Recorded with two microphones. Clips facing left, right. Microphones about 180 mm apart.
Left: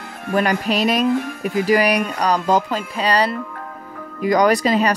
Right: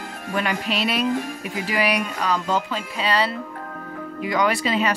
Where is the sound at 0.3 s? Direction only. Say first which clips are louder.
Left 6 dB; 45° left (ahead or behind).